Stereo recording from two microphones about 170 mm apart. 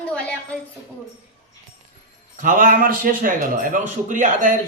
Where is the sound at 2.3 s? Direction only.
50° right (ahead or behind).